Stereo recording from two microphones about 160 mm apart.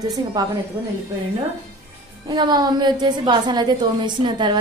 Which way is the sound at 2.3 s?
25° right (ahead or behind).